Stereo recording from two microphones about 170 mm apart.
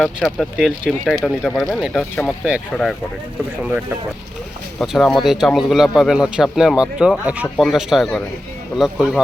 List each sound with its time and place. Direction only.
0.0 s a man's voice: centre (ahead or behind)
4.8 s a man's voice: centre (ahead or behind)